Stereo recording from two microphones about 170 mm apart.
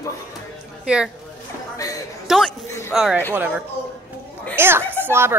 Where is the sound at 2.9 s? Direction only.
5° right (ahead or behind).